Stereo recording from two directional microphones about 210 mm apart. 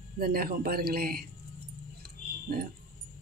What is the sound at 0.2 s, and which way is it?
Speech, 45° right (ahead or behind).